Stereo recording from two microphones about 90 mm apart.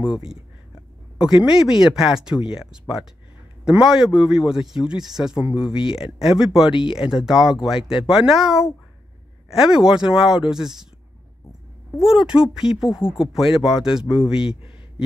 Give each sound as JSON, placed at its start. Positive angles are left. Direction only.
{"t": 0.0, "sound": "a man's voice", "side_deg": -10}
{"t": 6.7, "sound": "speech", "side_deg": 65}
{"t": 7.0, "sound": "speech", "side_deg": -5}
{"t": 12.0, "sound": "speech", "side_deg": -5}